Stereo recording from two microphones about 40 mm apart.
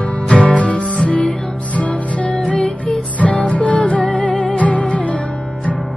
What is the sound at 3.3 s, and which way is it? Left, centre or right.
Music, left.